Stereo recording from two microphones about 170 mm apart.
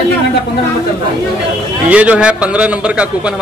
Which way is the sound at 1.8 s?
10° right (ahead or behind).